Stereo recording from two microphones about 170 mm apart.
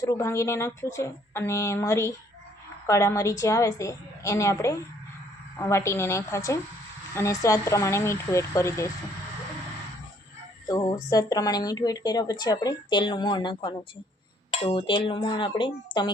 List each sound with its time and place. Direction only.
0.0 s a woman's voice: 20° left (ahead or behind)
10.7 s a woman's voice: 20° left (ahead or behind)